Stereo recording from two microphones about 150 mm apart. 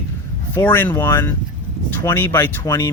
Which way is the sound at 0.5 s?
15° left (ahead or behind).